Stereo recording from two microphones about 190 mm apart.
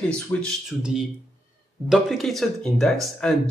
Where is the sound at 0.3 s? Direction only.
15° left (ahead or behind).